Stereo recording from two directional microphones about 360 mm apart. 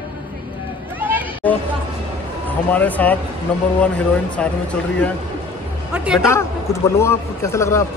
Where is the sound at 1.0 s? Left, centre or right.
Centre.